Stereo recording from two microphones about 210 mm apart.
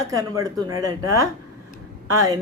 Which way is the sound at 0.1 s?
15° right (ahead or behind).